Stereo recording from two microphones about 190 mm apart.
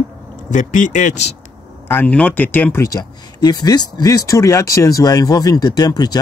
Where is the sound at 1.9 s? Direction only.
10° left (ahead or behind).